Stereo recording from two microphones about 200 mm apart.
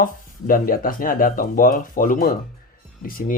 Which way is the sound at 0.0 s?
45° left (ahead or behind).